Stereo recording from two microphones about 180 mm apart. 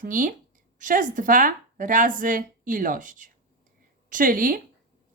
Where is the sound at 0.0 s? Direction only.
50° right (ahead or behind).